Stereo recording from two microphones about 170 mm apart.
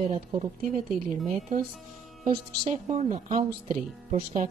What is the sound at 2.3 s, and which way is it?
Speech, 40° right (ahead or behind).